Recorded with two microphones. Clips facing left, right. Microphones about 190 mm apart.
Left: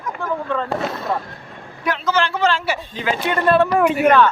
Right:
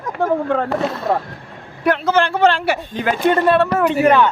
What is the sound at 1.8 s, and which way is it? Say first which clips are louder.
A man's voice: right 4 dB; 55° right (ahead or behind).